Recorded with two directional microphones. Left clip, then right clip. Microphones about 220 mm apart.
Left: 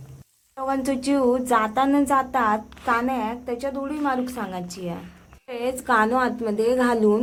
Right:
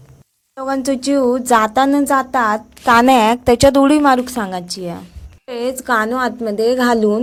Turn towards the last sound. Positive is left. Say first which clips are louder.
# right 5 dB
turn(degrees=-25)  # may be behind; listen again after turning